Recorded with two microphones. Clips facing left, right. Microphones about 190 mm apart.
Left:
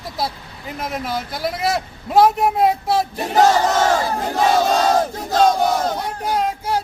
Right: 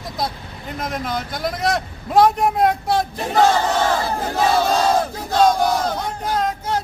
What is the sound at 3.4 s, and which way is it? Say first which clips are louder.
Battle cry: left 2 dB; 40° left (ahead or behind).